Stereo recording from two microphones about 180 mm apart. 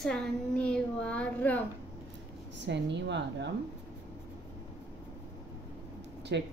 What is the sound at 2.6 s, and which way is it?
Speech, 75° right (ahead or behind).